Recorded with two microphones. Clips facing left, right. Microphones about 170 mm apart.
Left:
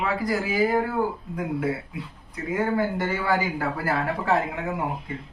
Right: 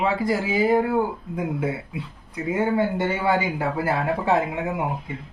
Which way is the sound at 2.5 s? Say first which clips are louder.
Right 2 dB; 25° right (ahead or behind).